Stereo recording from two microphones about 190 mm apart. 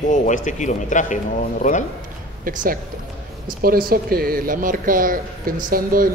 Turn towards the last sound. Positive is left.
turn(degrees=-50)  # may be behind; listen again after turning